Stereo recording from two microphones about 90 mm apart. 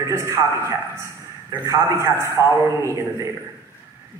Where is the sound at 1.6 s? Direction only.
30° right (ahead or behind).